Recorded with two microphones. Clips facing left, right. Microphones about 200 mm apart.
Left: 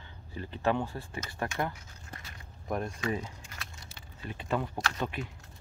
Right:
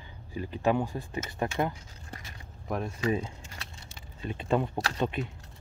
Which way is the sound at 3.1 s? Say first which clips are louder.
Right 4 dB; 30° right (ahead or behind).